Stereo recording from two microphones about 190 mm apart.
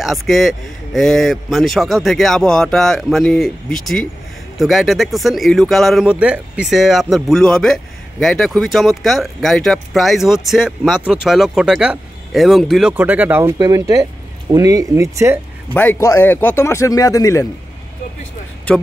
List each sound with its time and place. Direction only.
0.0 s speech: centre (ahead or behind)
13.6 s speech: 20° right (ahead or behind)
15.7 s speech: 10° left (ahead or behind)
18.7 s speech: 5° left (ahead or behind)